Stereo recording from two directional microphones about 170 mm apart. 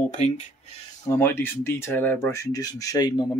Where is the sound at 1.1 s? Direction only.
10° left (ahead or behind).